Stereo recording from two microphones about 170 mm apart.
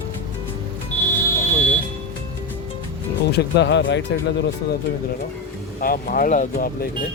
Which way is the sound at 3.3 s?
75° left (ahead or behind).